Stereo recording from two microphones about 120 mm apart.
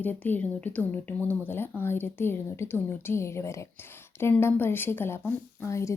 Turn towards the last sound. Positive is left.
turn(degrees=25)  # may be behind; listen again after turning